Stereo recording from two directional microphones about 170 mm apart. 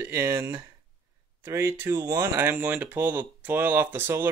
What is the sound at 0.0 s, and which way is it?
Speech, 15° right (ahead or behind).